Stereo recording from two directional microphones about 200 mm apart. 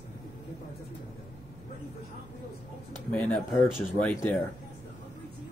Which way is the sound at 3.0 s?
5° left (ahead or behind).